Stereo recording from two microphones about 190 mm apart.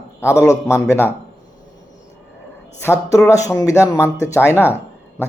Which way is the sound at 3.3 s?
15° left (ahead or behind).